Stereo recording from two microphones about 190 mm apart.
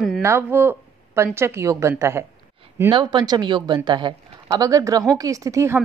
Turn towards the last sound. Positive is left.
turn(degrees=-15)  # may be behind; listen again after turning